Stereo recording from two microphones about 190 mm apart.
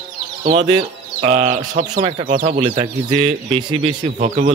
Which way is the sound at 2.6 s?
25° right (ahead or behind).